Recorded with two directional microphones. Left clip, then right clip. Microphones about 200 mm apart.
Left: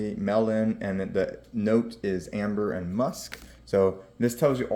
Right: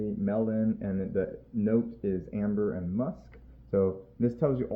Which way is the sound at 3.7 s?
10° left (ahead or behind).